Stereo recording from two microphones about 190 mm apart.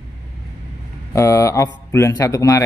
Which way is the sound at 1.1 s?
15° left (ahead or behind).